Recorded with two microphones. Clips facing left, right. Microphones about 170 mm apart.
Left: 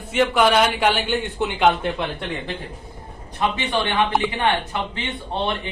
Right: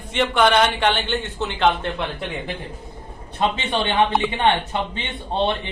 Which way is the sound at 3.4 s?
25° right (ahead or behind).